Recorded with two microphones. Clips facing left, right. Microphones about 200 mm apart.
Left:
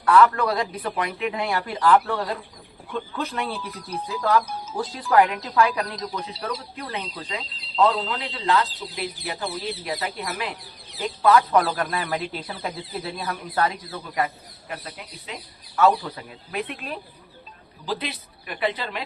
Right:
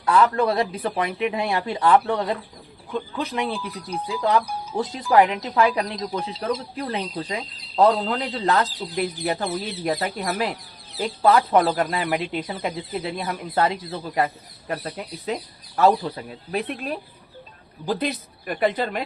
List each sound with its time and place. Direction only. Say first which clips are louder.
0.0 s speech: left 1 dB; 25° right (ahead or behind)
14.7 s speech: right 7 dB; 45° right (ahead or behind)